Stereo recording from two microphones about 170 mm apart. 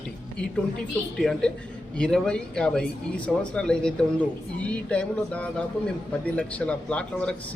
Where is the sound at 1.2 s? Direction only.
5° left (ahead or behind).